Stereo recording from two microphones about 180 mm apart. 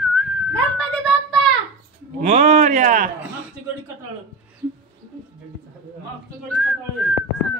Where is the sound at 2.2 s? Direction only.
40° right (ahead or behind).